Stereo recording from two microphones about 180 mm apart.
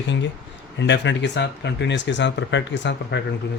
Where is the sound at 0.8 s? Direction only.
80° left.